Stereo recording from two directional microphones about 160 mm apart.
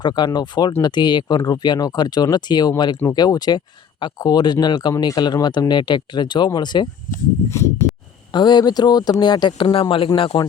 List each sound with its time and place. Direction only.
0.0 s speech: 25° left (ahead or behind)
7.1 s speech: 55° left (ahead or behind)
8.3 s a man's voice: 25° left (ahead or behind)